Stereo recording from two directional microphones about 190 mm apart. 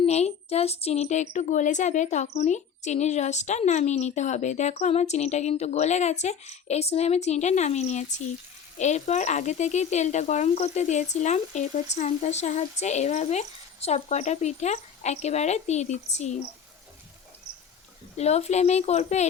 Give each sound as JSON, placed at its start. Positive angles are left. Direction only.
{"t": 0.0, "sound": "speech", "side_deg": 35}
{"t": 18.2, "sound": "speech", "side_deg": 35}